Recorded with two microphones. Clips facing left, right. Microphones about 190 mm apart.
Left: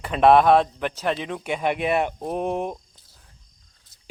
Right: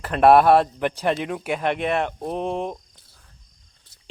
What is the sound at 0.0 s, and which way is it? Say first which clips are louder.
A man's voice: right 1 dB; 5° right (ahead or behind).